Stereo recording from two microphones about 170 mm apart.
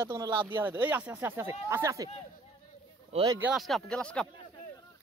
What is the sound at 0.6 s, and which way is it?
Speech, 10° right (ahead or behind).